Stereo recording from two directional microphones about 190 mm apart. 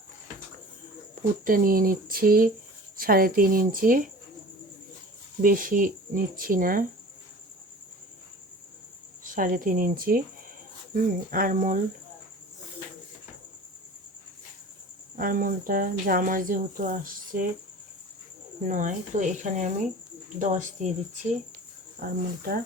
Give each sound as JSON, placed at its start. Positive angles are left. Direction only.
{"t": 1.5, "sound": "speech", "side_deg": -50}
{"t": 5.4, "sound": "speech", "side_deg": -45}
{"t": 9.2, "sound": "speech", "side_deg": -45}
{"t": 15.2, "sound": "speech", "side_deg": -50}
{"t": 18.7, "sound": "speech", "side_deg": -40}
{"t": 22.0, "sound": "speech", "side_deg": -50}